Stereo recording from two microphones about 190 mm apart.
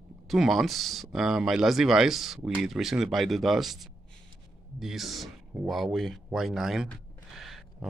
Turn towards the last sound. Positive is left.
turn(degrees=0)  # may be behind; listen again after turning